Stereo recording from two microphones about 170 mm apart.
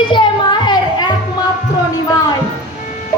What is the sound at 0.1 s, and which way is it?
Music, 25° left (ahead or behind).